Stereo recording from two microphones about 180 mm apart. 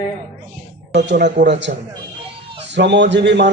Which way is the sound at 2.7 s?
75° right (ahead or behind).